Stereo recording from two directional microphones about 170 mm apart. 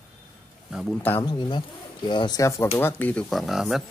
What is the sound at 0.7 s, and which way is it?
Speech, 5° right (ahead or behind).